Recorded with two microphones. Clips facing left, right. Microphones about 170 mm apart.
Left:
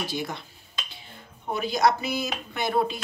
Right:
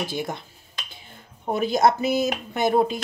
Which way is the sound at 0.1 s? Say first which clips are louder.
Right 2 dB; 50° right (ahead or behind).